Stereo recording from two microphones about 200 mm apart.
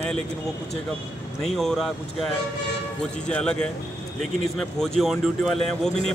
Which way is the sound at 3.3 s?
5° left (ahead or behind).